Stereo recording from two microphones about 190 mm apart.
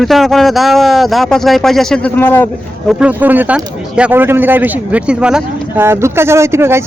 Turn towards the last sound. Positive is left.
turn(degrees=-15)  # may be behind; listen again after turning